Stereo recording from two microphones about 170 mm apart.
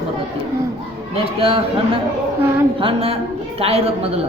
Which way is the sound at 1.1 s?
35° right (ahead or behind).